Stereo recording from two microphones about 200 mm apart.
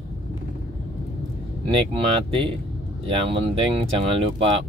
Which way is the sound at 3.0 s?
25° right (ahead or behind).